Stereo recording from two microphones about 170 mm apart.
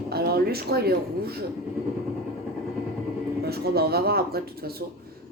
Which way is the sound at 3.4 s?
65° right (ahead or behind).